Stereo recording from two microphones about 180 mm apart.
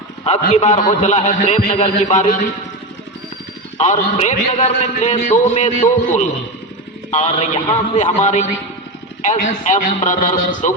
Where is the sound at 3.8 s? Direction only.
40° left (ahead or behind).